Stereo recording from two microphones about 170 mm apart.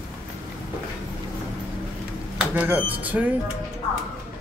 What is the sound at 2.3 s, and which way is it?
Speech, 10° right (ahead or behind).